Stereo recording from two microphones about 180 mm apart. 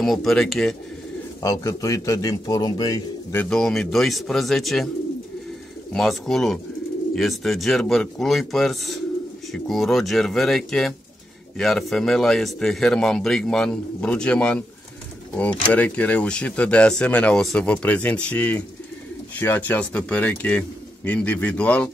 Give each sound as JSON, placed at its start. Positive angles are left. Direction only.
{"t": 0.0, "sound": "a man's voice", "side_deg": 0}
{"t": 1.4, "sound": "a man's voice", "side_deg": 20}
{"t": 3.4, "sound": "a man's voice", "side_deg": 5}
{"t": 5.9, "sound": "a man's voice", "side_deg": 0}